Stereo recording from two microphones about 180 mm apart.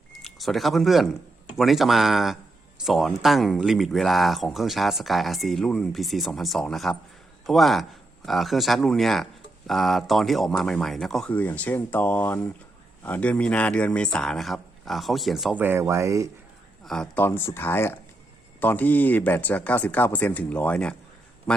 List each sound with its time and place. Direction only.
0.1 s speech: centre (ahead or behind)
15.6 s speech: 15° right (ahead or behind)
16.8 s a man's voice: 5° left (ahead or behind)